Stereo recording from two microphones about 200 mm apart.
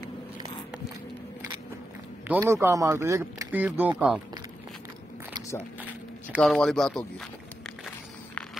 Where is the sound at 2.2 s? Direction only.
10° right (ahead or behind).